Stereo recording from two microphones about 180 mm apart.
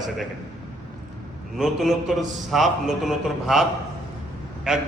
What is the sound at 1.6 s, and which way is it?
A man's voice, centre (ahead or behind).